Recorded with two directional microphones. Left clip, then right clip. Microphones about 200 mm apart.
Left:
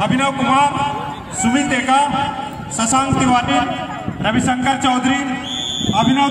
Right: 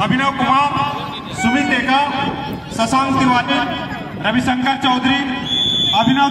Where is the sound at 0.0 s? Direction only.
40° left (ahead or behind).